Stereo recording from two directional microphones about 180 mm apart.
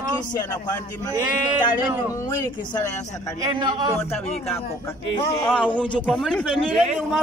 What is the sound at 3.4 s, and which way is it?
Speech, 25° right (ahead or behind).